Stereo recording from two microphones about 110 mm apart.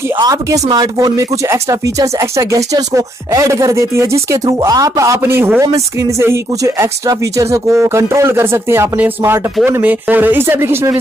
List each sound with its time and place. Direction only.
0.2 s speech: 30° right (ahead or behind)